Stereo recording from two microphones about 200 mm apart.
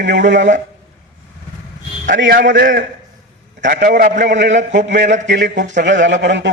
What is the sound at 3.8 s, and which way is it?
Speech, 40° right (ahead or behind).